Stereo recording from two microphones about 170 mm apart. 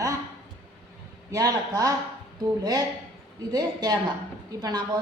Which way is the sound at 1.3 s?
20° right (ahead or behind).